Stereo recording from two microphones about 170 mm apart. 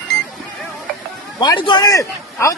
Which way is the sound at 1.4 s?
25° left (ahead or behind).